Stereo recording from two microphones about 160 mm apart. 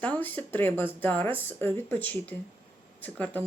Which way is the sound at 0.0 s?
10° left (ahead or behind).